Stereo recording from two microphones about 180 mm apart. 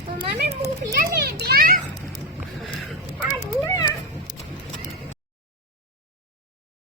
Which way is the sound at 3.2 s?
20° left (ahead or behind).